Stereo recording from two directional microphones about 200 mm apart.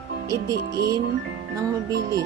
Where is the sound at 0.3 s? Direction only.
15° right (ahead or behind).